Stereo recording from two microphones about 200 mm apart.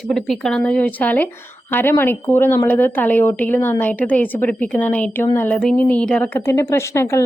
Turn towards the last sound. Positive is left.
turn(degrees=15)  # may be behind; listen again after turning